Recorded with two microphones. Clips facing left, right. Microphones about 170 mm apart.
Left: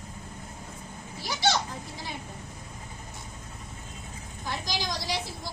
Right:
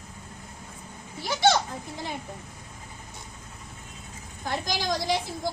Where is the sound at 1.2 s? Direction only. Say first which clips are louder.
Right 5 dB; 55° right (ahead or behind).